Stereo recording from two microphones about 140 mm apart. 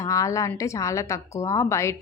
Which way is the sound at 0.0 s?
25° left (ahead or behind).